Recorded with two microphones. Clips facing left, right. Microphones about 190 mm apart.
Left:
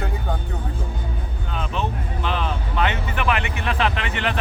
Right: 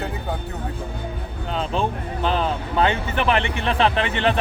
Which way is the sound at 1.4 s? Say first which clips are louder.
Right 4 dB; 30° right (ahead or behind).